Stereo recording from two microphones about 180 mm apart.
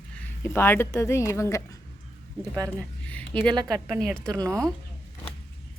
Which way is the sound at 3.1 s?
5° left (ahead or behind).